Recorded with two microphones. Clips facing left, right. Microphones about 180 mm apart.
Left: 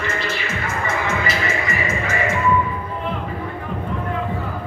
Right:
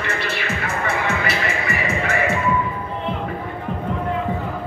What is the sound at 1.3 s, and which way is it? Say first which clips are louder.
Music: even; 65° right (ahead or behind).